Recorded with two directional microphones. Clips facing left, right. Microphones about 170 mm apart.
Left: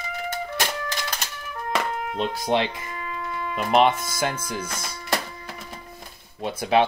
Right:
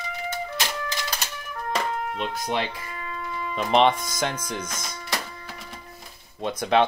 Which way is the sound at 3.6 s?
5° left (ahead or behind).